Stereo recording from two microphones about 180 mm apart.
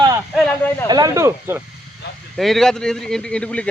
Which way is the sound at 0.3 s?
10° left (ahead or behind).